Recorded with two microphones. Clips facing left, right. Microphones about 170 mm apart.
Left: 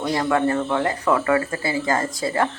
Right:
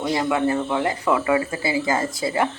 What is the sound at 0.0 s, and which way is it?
Speech, 15° right (ahead or behind).